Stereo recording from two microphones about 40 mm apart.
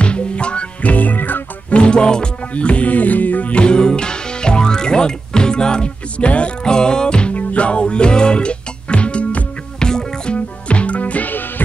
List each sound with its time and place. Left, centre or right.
0.0 s music: left
0.9 s music: left
1.7 s music: left
2.5 s music: left
3.5 s music: left
6.6 s music: centre
9.8 s music: centre
10.3 s music: left